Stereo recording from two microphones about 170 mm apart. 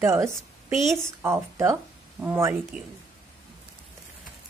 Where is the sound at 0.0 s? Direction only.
15° right (ahead or behind).